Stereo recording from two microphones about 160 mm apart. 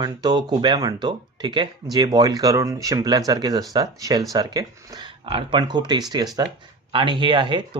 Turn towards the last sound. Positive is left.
turn(degrees=-30)  # may be behind; listen again after turning